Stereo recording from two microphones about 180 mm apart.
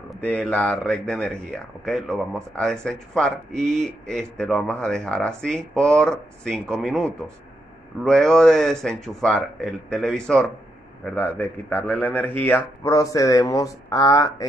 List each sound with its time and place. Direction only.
0.1 s a man's voice: 5° left (ahead or behind)